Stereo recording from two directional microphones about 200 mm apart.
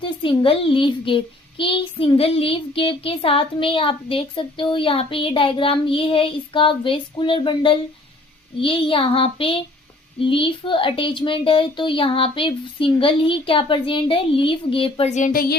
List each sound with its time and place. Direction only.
0.0 s a child's voice: 25° left (ahead or behind); by 15.5 s 45° left (ahead or behind)